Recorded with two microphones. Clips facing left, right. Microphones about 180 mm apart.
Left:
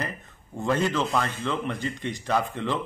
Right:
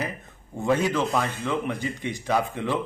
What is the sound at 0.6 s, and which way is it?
A man's voice, 10° right (ahead or behind).